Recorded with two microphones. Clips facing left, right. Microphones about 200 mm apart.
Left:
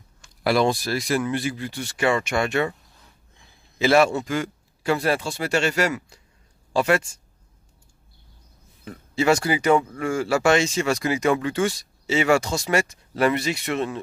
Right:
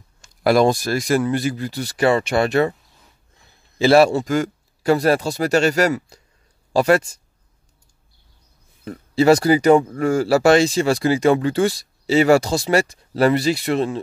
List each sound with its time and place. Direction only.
0.2 s speech: 45° right (ahead or behind)
3.7 s speech: 35° right (ahead or behind)
8.8 s speech: 35° right (ahead or behind)